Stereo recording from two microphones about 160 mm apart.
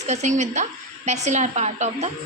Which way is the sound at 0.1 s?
50° right (ahead or behind).